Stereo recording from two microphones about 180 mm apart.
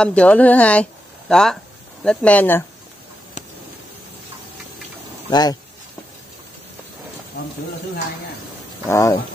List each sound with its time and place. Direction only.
0.0 s speech: 5° left (ahead or behind)
5.3 s speech: 20° left (ahead or behind)
8.8 s speech: 15° left (ahead or behind)